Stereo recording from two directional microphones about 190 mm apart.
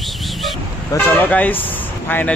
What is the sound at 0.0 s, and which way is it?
Toot, centre (ahead or behind).